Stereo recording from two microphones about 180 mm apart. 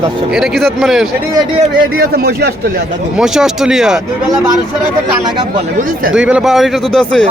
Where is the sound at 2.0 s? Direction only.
60° right (ahead or behind).